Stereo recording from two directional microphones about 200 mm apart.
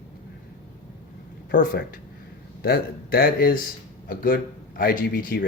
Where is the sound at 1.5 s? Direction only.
45° left (ahead or behind).